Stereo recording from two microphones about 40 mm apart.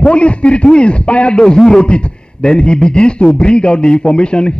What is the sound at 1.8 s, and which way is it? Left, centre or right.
A man's voice, left.